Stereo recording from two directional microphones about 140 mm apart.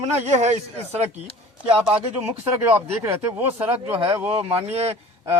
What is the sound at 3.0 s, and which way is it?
Speech, 20° right (ahead or behind).